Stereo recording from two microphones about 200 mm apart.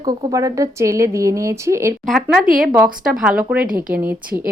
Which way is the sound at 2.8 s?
5° right (ahead or behind).